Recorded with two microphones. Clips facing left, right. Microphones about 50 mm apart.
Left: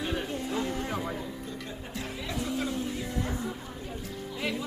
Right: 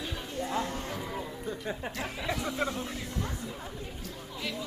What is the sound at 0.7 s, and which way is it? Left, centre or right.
Music, left.